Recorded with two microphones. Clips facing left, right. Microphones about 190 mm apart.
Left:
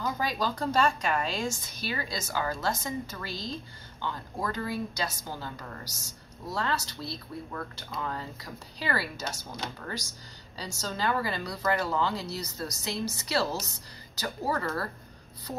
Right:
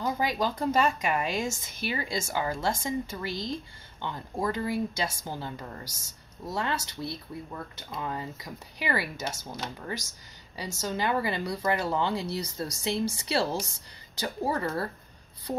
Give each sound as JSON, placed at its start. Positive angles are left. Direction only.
{"t": 0.0, "sound": "a woman's voice", "side_deg": -20}